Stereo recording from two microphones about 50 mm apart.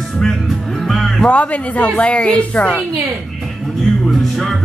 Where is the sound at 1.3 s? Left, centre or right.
Left.